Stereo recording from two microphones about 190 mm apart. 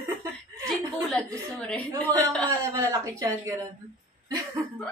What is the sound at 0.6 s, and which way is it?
A woman's voice, 5° left (ahead or behind).